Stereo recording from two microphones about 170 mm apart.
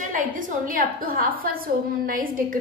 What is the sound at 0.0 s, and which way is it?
A woman's voice, 50° right (ahead or behind).